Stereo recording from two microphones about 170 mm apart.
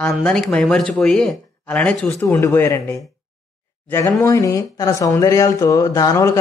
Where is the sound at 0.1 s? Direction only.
5° left (ahead or behind).